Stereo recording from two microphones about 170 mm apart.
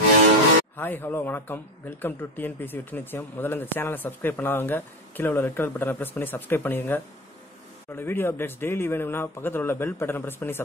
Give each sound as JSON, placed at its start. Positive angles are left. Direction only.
{"t": 0.7, "sound": "a man's voice", "side_deg": 10}